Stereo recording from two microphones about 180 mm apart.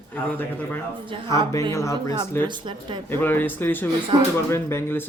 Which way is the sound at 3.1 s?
10° left (ahead or behind).